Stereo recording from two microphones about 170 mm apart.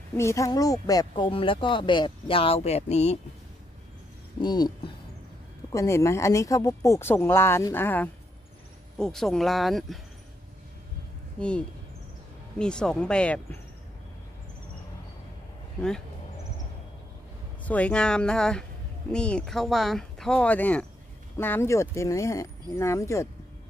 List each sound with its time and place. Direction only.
0.2 s speech: 15° left (ahead or behind); by 3.2 s 40° left (ahead or behind)
4.4 s speech: 25° left (ahead or behind); by 9.9 s centre (ahead or behind)
11.3 s speech: 5° left (ahead or behind)
17.6 s speech: 10° left (ahead or behind)